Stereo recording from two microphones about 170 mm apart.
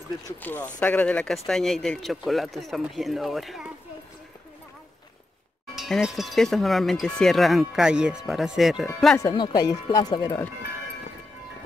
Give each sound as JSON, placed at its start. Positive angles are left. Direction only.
{"t": 0.4, "sound": "speech", "side_deg": 10}
{"t": 5.8, "sound": "speech", "side_deg": 0}
{"t": 9.2, "sound": "speech", "side_deg": 25}